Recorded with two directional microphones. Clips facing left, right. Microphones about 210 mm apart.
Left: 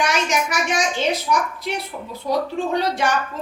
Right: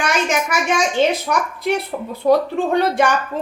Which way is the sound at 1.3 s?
60° right (ahead or behind).